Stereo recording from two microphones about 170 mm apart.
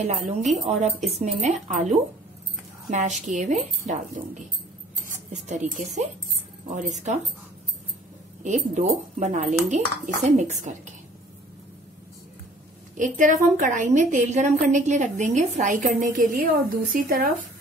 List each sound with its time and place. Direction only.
0.0 s a woman's voice: 45° right (ahead or behind)
8.5 s a woman's voice: 45° right (ahead or behind)
12.9 s a woman's voice: 50° right (ahead or behind)